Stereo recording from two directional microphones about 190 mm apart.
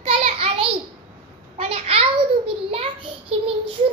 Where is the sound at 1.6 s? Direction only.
30° right (ahead or behind).